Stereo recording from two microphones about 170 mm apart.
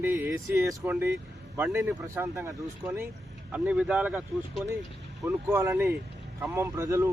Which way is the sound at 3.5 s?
5° right (ahead or behind).